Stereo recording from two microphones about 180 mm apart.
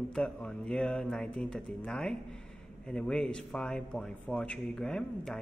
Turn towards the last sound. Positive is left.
turn(degrees=5)  # may be behind; listen again after turning